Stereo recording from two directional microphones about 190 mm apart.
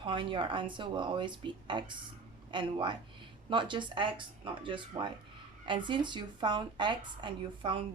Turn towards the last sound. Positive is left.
turn(degrees=-25)  # may be behind; listen again after turning